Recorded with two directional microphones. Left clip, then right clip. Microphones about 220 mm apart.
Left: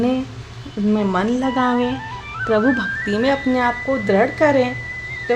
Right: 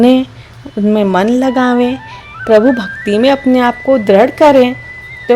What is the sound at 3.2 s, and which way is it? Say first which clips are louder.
A woman's voice: right 9 dB; 30° right (ahead or behind).